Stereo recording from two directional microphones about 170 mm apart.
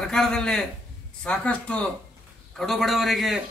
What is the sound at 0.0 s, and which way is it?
A man's voice, 5° left (ahead or behind).